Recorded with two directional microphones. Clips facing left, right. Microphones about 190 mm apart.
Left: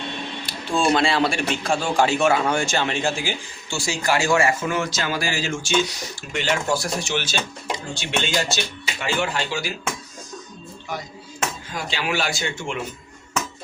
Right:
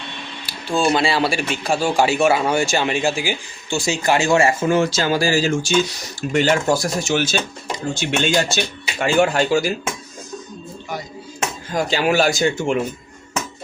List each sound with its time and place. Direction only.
0.4 s a man's voice: 5° right (ahead or behind); by 9.7 s 45° right (ahead or behind)
11.7 s a man's voice: 45° right (ahead or behind)